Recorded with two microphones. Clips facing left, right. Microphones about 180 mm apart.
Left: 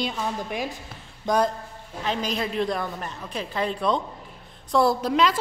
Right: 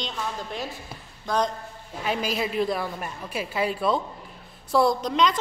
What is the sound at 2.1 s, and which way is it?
A woman's voice, 5° right (ahead or behind).